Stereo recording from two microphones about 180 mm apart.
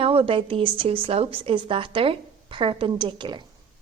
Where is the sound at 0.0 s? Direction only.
30° right (ahead or behind).